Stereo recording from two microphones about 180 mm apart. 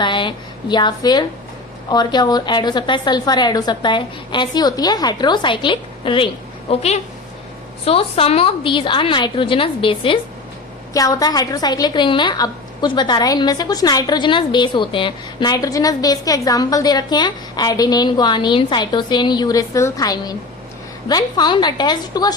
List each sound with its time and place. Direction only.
0.0 s a woman's voice: 25° left (ahead or behind)